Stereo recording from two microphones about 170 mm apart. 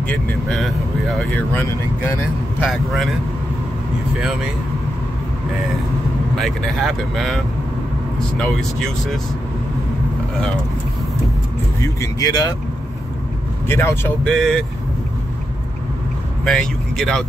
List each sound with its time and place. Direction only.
0.1 s speech: centre (ahead or behind)
2.6 s speech: centre (ahead or behind)
6.3 s speech: centre (ahead or behind)
12.0 s speech: 20° left (ahead or behind)
13.7 s speech: 15° left (ahead or behind)
14.2 s speech: centre (ahead or behind)
16.4 s speech: 5° left (ahead or behind)